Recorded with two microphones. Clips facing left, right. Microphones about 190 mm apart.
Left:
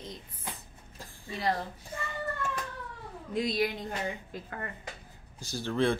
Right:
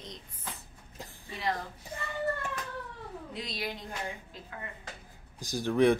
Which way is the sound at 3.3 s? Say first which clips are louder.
Left 10 dB; 50° left (ahead or behind).